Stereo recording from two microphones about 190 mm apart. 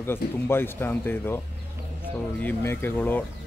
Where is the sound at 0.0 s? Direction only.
10° left (ahead or behind).